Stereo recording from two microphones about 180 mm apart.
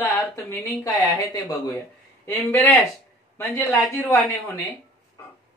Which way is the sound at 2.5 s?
15° left (ahead or behind).